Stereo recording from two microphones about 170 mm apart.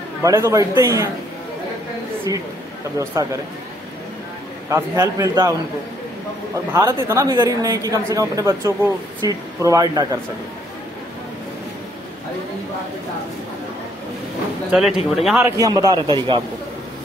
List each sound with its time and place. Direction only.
0.2 s a man's voice: 15° right (ahead or behind)
2.3 s a woman's voice: 20° right (ahead or behind)
4.6 s a man's voice: 15° right (ahead or behind)
6.5 s a man's voice: 15° right (ahead or behind)
14.7 s speech: 5° right (ahead or behind)
15.5 s a woman's voice: 20° right (ahead or behind)